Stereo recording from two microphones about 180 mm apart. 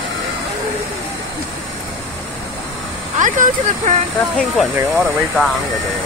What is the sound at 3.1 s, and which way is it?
Speech, 45° right (ahead or behind).